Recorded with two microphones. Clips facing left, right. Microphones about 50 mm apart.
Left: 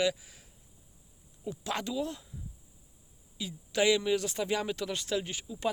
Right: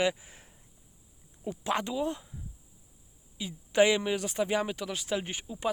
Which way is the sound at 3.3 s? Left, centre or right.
Right.